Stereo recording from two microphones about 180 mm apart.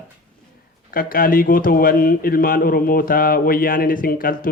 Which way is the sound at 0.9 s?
55° left (ahead or behind).